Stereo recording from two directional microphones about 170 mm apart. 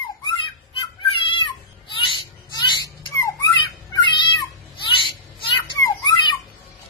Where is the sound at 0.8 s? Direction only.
30° left (ahead or behind).